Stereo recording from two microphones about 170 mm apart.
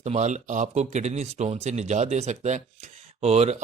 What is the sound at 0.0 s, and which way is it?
A man's voice, 45° right (ahead or behind).